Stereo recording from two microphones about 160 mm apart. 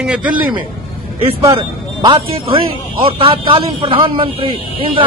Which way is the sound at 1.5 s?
30° right (ahead or behind).